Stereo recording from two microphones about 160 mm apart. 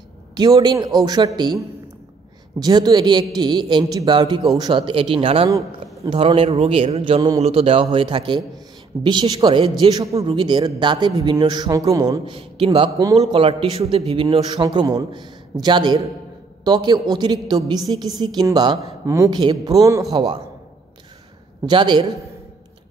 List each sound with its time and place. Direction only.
0.3 s a woman's voice: 25° right (ahead or behind)
2.6 s a woman's voice: 25° right (ahead or behind)
7.2 s a woman's voice: 20° right (ahead or behind)
7.4 s a man's voice: 35° right (ahead or behind)
12.4 s a man's voice: 35° right (ahead or behind)
21.6 s a woman's voice: 30° right (ahead or behind)